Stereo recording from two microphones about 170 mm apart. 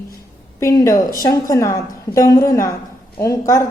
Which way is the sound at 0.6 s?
20° left (ahead or behind).